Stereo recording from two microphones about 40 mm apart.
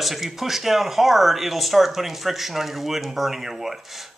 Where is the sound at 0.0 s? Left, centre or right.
Centre.